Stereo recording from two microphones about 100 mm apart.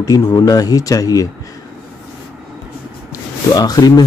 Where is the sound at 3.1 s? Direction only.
40° left (ahead or behind).